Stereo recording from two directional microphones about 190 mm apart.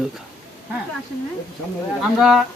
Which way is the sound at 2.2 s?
Centre (ahead or behind).